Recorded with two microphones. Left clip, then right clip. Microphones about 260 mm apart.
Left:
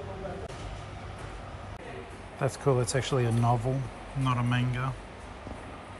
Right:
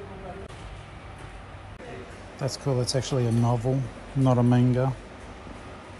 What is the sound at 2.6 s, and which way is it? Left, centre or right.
Speech, centre.